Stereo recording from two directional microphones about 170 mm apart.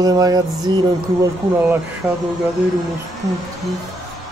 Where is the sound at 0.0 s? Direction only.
20° right (ahead or behind).